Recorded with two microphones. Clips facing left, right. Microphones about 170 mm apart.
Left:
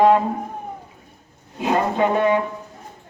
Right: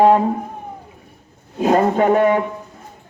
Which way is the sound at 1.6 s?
45° right (ahead or behind).